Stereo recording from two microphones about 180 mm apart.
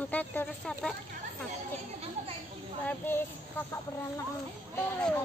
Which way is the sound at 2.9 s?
10° left (ahead or behind).